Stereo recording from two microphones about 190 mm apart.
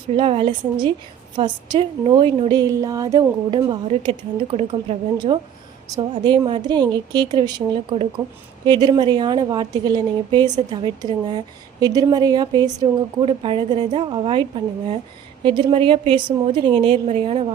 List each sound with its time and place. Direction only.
0.2 s a woman's voice: 30° right (ahead or behind)
4.5 s a woman's voice: 35° right (ahead or behind)
5.1 s a woman's voice: 25° right (ahead or behind)